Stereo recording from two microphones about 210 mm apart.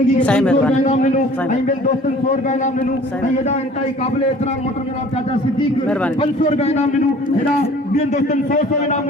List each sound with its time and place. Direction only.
0.3 s speech: 5° left (ahead or behind)
0.9 s a man's voice: 35° left (ahead or behind)
6.4 s a man's voice: 30° left (ahead or behind)
7.9 s a man's voice: 35° left (ahead or behind)